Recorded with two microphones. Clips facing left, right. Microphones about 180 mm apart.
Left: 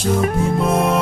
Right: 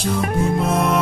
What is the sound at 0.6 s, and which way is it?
Speech, centre (ahead or behind).